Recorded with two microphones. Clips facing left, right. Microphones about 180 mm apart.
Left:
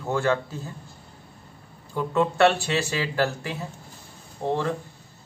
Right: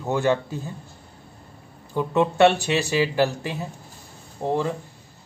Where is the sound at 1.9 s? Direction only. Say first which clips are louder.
Right 2 dB; 20° right (ahead or behind).